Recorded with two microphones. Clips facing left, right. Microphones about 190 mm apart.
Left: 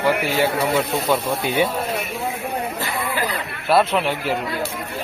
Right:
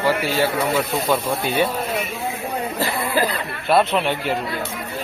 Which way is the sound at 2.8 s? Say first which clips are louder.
Right 3 dB; 35° right (ahead or behind).